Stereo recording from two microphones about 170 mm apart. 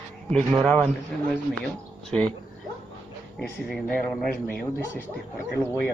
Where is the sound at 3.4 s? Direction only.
10° left (ahead or behind).